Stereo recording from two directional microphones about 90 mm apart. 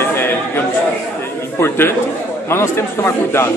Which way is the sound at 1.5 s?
25° left (ahead or behind).